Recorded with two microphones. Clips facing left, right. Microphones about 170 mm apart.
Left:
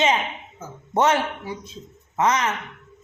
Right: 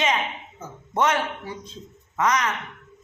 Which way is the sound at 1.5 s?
10° left (ahead or behind).